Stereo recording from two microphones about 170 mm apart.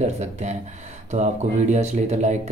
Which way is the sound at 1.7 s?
40° right (ahead or behind).